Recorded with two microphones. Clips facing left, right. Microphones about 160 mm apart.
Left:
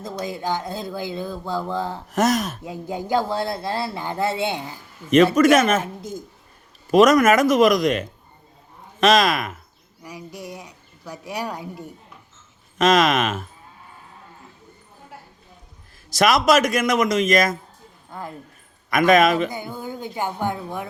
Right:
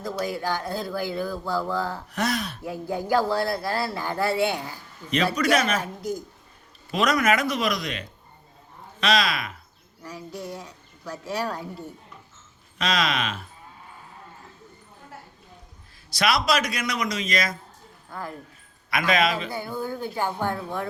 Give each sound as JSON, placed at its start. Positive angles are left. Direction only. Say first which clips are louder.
{"t": 0.0, "sound": "speech", "louder": "even", "side_deg": 20}
{"t": 2.0, "sound": "a man's voice", "louder": "left 7 dB", "side_deg": 45}
{"t": 2.6, "sound": "speech", "louder": "even", "side_deg": 20}
{"t": 5.1, "sound": "a man's voice", "louder": "left 8 dB", "side_deg": 45}
{"t": 5.8, "sound": "speech", "louder": "right 1 dB", "side_deg": 25}
{"t": 6.9, "sound": "a man's voice", "louder": "left 8 dB", "side_deg": 45}
{"t": 10.0, "sound": "a woman's voice", "louder": "even", "side_deg": 15}
{"t": 12.8, "sound": "a man's voice", "louder": "left 8 dB", "side_deg": 45}
{"t": 16.0, "sound": "a man's voice", "louder": "left 6 dB", "side_deg": 45}
{"t": 18.1, "sound": "speech", "louder": "left 1 dB", "side_deg": 20}
{"t": 18.9, "sound": "a man's voice", "louder": "left 7 dB", "side_deg": 45}
{"t": 19.5, "sound": "speech", "louder": "right 1 dB", "side_deg": 15}